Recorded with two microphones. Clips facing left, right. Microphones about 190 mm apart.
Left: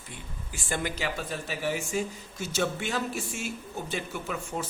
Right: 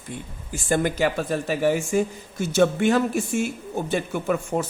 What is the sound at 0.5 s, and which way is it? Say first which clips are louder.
Speech: right 10 dB; 45° right (ahead or behind).